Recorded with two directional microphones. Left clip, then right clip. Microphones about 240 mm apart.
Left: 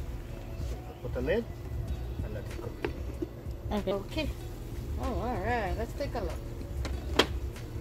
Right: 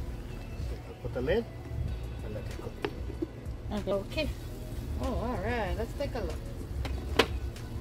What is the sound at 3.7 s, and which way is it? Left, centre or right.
Speech, left.